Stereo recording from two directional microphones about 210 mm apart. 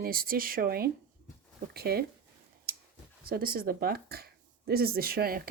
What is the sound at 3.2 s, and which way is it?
Speech, 45° right (ahead or behind).